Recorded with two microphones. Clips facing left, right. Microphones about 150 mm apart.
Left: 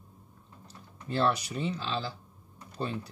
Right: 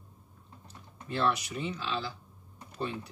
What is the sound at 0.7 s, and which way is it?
Speech, 35° left (ahead or behind).